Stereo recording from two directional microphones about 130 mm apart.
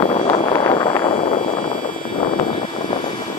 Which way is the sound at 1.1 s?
55° left (ahead or behind).